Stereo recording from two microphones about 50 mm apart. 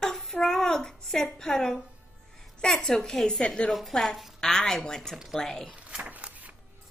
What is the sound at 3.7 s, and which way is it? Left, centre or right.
A woman's voice, centre.